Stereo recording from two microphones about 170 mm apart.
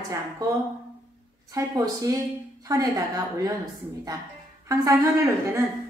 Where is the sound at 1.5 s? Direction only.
20° right (ahead or behind).